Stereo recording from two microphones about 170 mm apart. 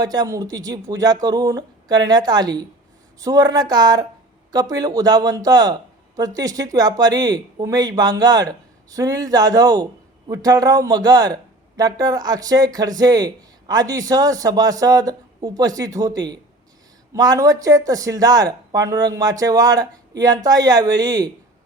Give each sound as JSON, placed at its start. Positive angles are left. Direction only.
{"t": 0.0, "sound": "speech", "side_deg": -20}